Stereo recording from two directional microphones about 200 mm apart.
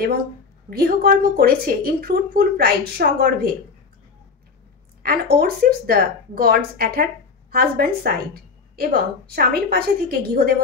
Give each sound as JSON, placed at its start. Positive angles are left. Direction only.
{"t": 0.7, "sound": "a woman's voice", "side_deg": -50}
{"t": 5.0, "sound": "a woman's voice", "side_deg": -50}